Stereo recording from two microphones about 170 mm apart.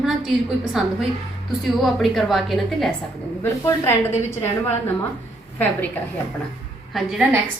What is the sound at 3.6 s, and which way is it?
Speech, 15° left (ahead or behind).